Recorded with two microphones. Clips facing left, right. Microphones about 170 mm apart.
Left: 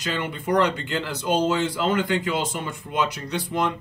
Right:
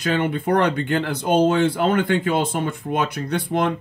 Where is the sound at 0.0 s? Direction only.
60° right (ahead or behind).